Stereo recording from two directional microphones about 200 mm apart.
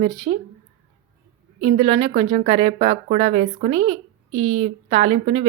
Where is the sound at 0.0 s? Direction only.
30° right (ahead or behind).